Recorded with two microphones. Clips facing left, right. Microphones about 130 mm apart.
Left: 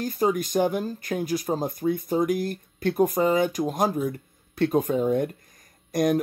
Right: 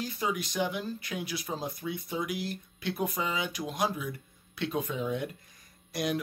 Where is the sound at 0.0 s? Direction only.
45° left (ahead or behind).